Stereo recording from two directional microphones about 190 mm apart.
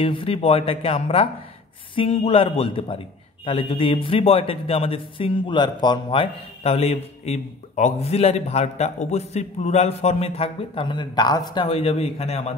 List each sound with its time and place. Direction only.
0.0 s a man's voice: 30° left (ahead or behind)